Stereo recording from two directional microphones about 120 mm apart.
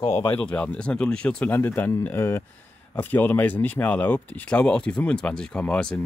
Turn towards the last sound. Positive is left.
turn(degrees=5)  # may be behind; listen again after turning